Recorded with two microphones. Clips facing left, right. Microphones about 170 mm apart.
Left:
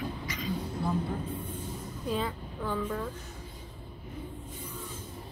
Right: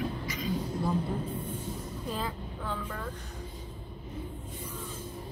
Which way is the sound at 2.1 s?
Centre (ahead or behind).